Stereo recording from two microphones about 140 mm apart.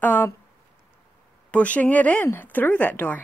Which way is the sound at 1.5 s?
10° left (ahead or behind).